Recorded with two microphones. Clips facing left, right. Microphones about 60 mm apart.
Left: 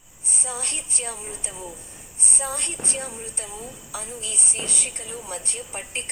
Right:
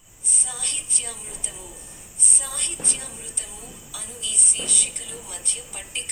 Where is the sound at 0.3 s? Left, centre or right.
Left.